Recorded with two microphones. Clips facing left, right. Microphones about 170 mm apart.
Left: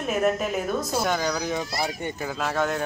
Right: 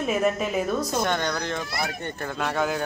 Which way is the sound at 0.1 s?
Centre (ahead or behind).